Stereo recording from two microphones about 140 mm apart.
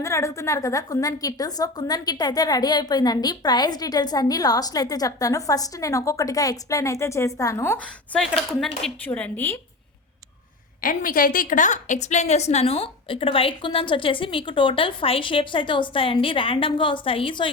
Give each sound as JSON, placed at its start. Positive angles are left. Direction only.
{"t": 0.0, "sound": "a woman's voice", "side_deg": 20}
{"t": 10.8, "sound": "a woman's voice", "side_deg": 80}